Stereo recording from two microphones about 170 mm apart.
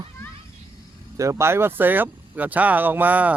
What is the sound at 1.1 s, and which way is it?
Speech, 15° right (ahead or behind).